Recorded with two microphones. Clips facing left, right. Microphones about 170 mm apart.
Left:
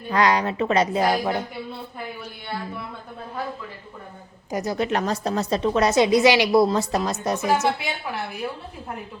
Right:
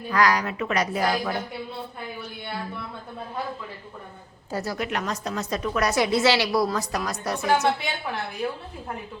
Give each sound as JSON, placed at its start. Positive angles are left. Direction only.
{"t": 0.1, "sound": "a woman's voice", "side_deg": 25}
{"t": 4.5, "sound": "a woman's voice", "side_deg": 20}
{"t": 7.4, "sound": "a woman's voice", "side_deg": 0}